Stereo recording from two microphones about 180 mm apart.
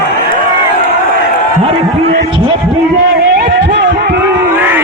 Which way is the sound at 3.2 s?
70° right (ahead or behind).